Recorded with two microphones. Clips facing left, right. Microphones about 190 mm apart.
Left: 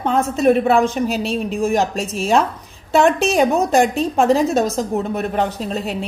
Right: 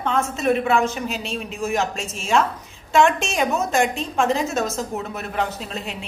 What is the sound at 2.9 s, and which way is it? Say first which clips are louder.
A woman's voice: left 4 dB; 40° left (ahead or behind).